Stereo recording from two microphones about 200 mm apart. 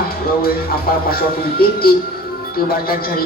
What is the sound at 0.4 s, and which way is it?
Speech, 50° left (ahead or behind).